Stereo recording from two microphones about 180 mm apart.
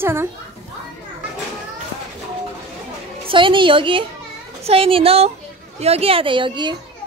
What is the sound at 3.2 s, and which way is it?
A woman's voice, 30° right (ahead or behind).